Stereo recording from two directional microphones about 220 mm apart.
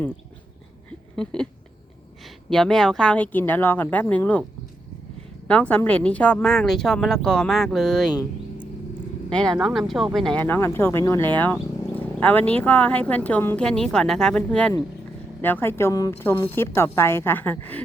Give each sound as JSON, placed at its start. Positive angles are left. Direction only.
{"t": 1.1, "sound": "a sound", "side_deg": 5}
{"t": 2.2, "sound": "speech", "side_deg": 0}
{"t": 5.5, "sound": "speech", "side_deg": 5}
{"t": 9.6, "sound": "speech", "side_deg": 0}